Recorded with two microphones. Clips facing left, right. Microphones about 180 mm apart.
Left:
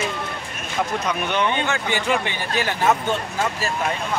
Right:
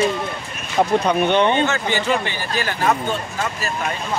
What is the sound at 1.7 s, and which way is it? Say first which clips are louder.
Speech: right 2 dB; 15° left (ahead or behind).